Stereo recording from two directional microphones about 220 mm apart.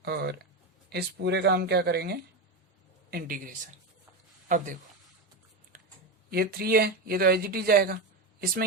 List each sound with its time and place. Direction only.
0.0 s a man's voice: 45° right (ahead or behind)
6.3 s speech: 45° right (ahead or behind)